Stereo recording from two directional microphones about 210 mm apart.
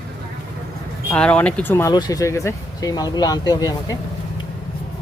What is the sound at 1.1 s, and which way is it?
Speech, 5° left (ahead or behind).